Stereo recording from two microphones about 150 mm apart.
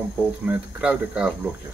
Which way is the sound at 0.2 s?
10° right (ahead or behind).